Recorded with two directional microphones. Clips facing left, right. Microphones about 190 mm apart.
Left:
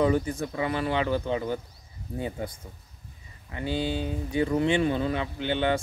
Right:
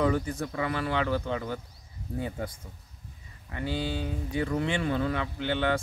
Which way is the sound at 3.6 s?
20° left (ahead or behind).